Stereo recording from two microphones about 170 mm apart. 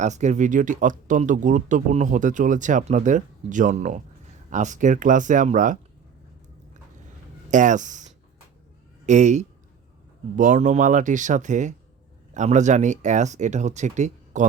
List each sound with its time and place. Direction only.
0.0 s speech: 45° right (ahead or behind)
7.5 s speech: 45° right (ahead or behind)